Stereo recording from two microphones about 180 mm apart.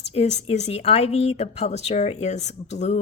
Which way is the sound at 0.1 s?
35° left (ahead or behind).